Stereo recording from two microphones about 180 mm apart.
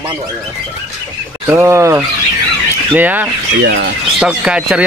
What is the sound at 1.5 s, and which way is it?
Speech, 15° right (ahead or behind).